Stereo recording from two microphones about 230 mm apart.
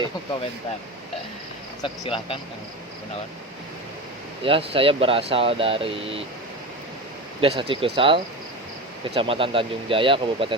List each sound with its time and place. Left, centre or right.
1.8 s speech: left
4.4 s speech: right
7.4 s speech: right